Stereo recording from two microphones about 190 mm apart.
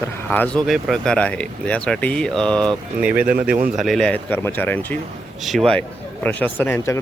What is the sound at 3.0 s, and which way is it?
A man's voice, 5° right (ahead or behind).